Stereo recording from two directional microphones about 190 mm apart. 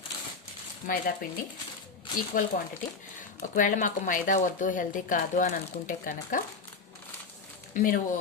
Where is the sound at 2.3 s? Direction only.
45° left (ahead or behind).